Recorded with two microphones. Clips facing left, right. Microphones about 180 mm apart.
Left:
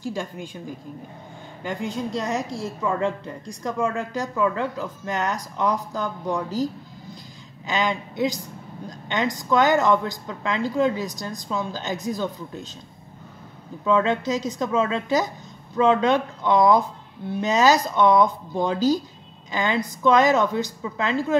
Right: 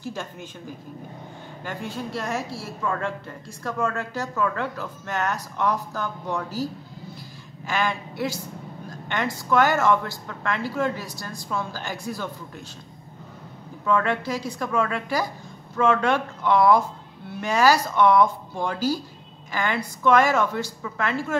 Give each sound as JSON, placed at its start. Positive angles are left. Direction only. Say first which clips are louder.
{"t": 0.0, "sound": "a woman's voice", "louder": "left 4 dB", "side_deg": 15}
{"t": 1.6, "sound": "a woman's voice", "louder": "left 4 dB", "side_deg": 15}
{"t": 13.8, "sound": "a woman's voice", "louder": "left 3 dB", "side_deg": 20}